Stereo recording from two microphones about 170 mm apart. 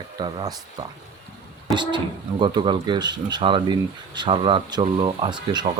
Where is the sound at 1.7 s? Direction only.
25° right (ahead or behind).